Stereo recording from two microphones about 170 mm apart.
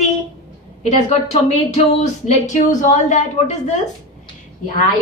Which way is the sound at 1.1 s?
40° left (ahead or behind).